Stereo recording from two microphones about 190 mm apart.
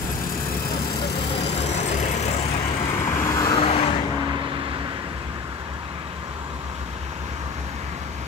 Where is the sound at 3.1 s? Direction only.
15° left (ahead or behind).